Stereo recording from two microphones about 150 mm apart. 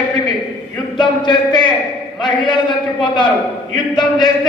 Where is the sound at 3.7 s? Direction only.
30° left (ahead or behind).